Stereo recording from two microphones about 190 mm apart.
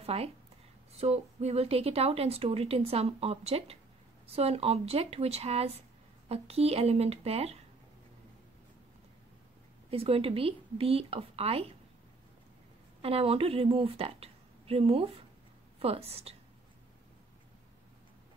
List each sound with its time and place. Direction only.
0.0 s a woman's voice: 30° right (ahead or behind)
9.8 s a woman's voice: 30° right (ahead or behind)
13.0 s a woman's voice: 30° right (ahead or behind)